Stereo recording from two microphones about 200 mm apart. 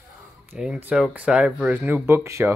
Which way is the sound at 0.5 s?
5° right (ahead or behind).